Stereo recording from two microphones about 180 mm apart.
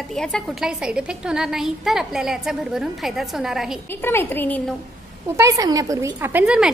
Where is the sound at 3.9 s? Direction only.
10° left (ahead or behind).